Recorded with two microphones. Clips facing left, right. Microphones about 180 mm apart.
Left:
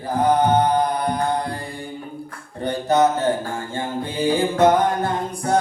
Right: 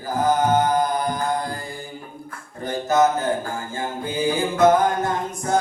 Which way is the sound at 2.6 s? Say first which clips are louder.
Left 1 dB; 35° left (ahead or behind).